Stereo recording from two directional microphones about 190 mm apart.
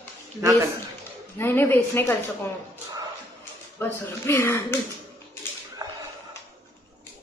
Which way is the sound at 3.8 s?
15° left (ahead or behind).